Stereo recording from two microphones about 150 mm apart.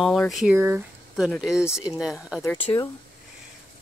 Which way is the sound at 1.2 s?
5° right (ahead or behind).